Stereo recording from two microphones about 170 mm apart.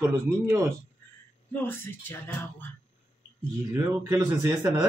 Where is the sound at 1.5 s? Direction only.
10° left (ahead or behind).